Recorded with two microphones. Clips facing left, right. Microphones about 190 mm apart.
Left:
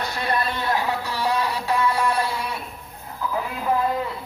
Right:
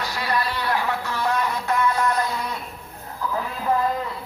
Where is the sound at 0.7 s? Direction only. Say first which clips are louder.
Left 1 dB; 15° left (ahead or behind).